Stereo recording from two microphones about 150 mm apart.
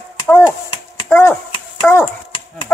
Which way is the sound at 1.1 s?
15° left (ahead or behind).